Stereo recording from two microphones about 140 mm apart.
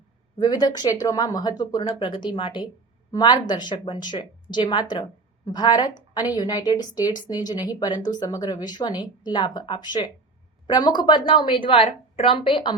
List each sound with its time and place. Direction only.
0.3 s a woman's voice: 30° left (ahead or behind)